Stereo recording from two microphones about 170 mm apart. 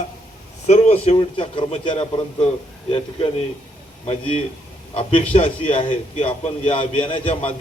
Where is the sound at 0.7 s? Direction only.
40° left (ahead or behind).